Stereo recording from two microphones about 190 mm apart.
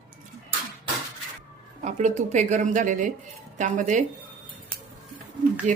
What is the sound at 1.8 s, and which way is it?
Speech, 40° right (ahead or behind).